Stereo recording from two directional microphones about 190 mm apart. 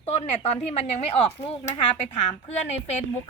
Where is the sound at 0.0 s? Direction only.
35° left (ahead or behind).